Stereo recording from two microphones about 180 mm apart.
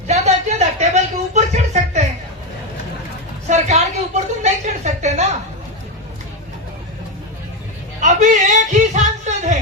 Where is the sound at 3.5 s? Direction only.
40° right (ahead or behind).